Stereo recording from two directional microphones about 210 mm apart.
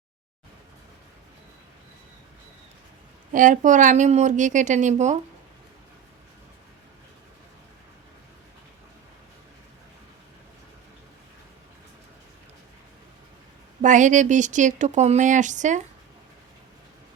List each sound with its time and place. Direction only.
3.3 s speech: 40° right (ahead or behind)
13.8 s speech: 35° right (ahead or behind)